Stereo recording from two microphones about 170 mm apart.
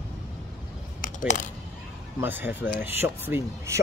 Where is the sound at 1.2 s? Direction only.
50° left (ahead or behind).